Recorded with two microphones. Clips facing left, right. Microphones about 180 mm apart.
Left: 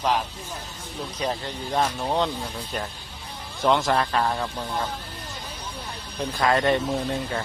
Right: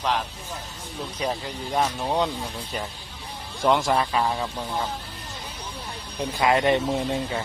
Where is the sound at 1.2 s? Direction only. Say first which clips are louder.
Even; 5° right (ahead or behind).